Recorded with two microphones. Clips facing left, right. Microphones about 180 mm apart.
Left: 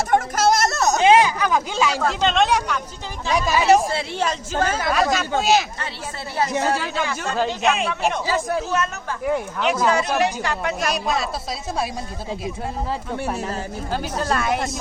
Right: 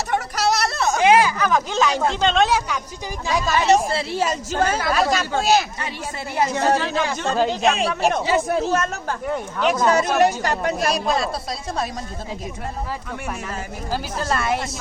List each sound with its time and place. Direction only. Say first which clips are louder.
0.1 s a sound: left 3 dB; 50° left (ahead or behind)
1.0 s a sound: even; 20° left (ahead or behind)
2.2 s a woman's voice: even; centre (ahead or behind)
3.3 s a woman's voice: left 1 dB; 10° left (ahead or behind)
6.7 s speech: right 3 dB; 5° left (ahead or behind)
7.6 s a woman's voice: right 2 dB; 35° right (ahead or behind)
9.2 s a woman's voice: left 1 dB; 5° left (ahead or behind)
10.2 s a woman's voice: right 4 dB; 40° right (ahead or behind)
10.9 s a woman's voice: right 2 dB; centre (ahead or behind)
13.2 s speech: left 4 dB; 30° left (ahead or behind)
13.9 s a woman's voice: left 1 dB; centre (ahead or behind)